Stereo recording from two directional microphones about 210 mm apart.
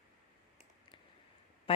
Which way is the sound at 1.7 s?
25° left (ahead or behind).